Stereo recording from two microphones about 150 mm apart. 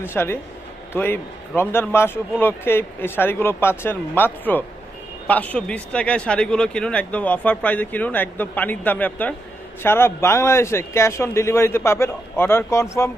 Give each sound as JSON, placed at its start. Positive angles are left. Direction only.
{"t": 0.0, "sound": "speech", "side_deg": 15}